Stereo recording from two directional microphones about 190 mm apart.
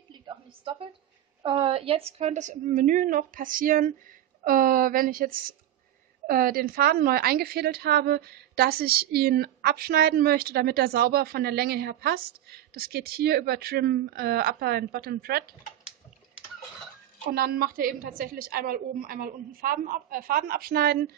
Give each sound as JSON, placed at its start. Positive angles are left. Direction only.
{"t": 0.1, "sound": "a sound", "side_deg": -25}
{"t": 1.4, "sound": "a woman's voice", "side_deg": -30}
{"t": 17.3, "sound": "a woman's voice", "side_deg": -50}